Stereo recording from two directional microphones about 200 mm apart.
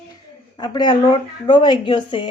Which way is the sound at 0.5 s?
20° left (ahead or behind).